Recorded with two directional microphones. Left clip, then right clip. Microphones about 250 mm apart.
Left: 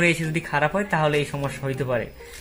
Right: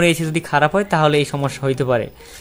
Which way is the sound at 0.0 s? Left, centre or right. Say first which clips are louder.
Right 4 dB; right.